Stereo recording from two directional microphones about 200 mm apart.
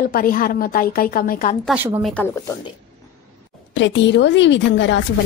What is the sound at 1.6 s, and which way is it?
Speech, 10° right (ahead or behind).